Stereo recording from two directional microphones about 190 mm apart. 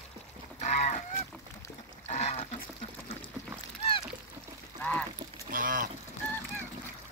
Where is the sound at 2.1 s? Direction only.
35° left (ahead or behind).